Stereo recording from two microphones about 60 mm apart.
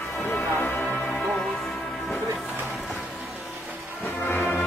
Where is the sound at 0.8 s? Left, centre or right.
Centre.